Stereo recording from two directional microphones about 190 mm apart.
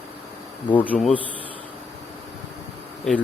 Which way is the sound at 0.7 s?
10° left (ahead or behind).